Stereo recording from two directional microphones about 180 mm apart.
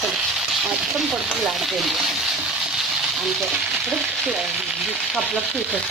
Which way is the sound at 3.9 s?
5° right (ahead or behind).